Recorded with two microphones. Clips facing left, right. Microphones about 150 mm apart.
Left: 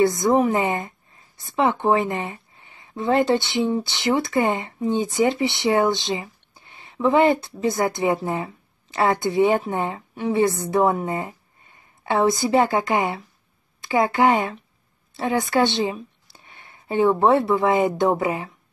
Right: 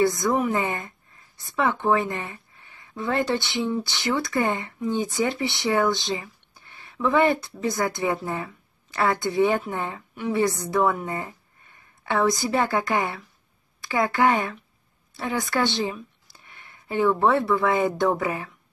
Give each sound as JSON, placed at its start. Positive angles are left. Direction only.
{"t": 0.0, "sound": "speech", "side_deg": 20}